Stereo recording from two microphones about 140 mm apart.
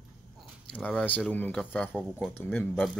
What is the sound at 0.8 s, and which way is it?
Speech, 5° left (ahead or behind).